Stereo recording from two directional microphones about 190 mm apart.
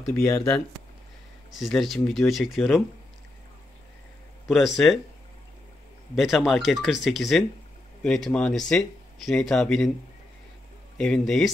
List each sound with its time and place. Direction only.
0.1 s speech: 15° left (ahead or behind)
1.6 s speech: centre (ahead or behind)
4.5 s speech: centre (ahead or behind)
6.1 s speech: centre (ahead or behind)
11.0 s speech: 5° left (ahead or behind)